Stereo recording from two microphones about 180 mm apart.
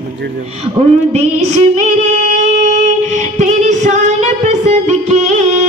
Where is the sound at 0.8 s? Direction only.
35° right (ahead or behind).